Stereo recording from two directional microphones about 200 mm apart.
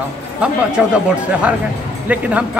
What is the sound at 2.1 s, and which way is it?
Speech, 5° right (ahead or behind).